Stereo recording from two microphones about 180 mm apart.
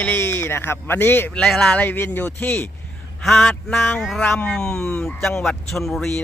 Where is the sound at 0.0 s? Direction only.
10° left (ahead or behind).